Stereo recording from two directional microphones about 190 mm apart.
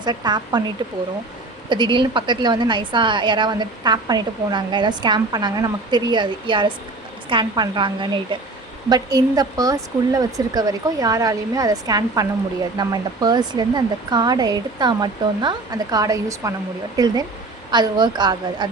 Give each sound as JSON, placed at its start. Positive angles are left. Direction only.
{"t": 0.0, "sound": "a woman's voice", "side_deg": -20}